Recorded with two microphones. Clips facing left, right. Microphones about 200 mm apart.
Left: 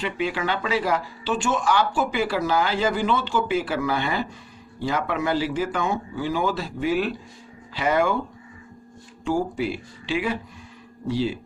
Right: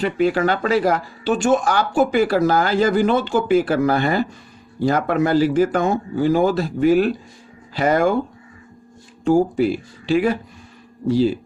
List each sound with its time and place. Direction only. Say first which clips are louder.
0.0 s speech: right 8 dB; 45° right (ahead or behind)
9.2 s speech: right 8 dB; 45° right (ahead or behind)